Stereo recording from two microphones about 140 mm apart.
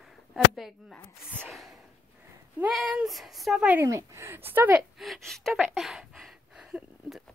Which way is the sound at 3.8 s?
20° right (ahead or behind).